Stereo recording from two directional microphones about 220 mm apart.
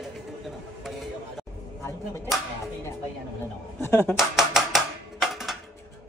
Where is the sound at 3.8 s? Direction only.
10° left (ahead or behind).